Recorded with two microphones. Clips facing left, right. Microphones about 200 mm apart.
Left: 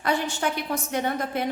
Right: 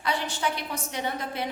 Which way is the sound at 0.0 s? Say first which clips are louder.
Left 3 dB; 50° left (ahead or behind).